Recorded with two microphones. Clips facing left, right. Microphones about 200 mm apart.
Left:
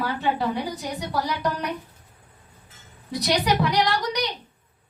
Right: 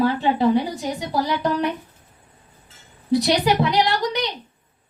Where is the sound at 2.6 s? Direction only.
25° right (ahead or behind).